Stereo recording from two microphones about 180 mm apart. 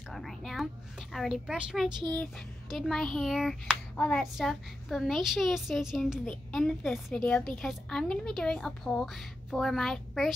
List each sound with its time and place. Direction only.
0.1 s a sound: centre (ahead or behind)
1.1 s a woman's voice: centre (ahead or behind)
1.9 s speech: 25° right (ahead or behind)
2.7 s a woman's voice: centre (ahead or behind)